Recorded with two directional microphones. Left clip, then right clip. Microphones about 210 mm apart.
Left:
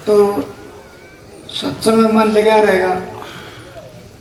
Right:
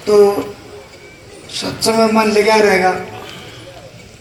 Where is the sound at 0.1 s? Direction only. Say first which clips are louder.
Right 2 dB; 55° left (ahead or behind).